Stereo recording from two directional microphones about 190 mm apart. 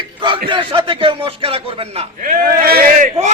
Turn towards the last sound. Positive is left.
turn(degrees=-40)  # may be behind; listen again after turning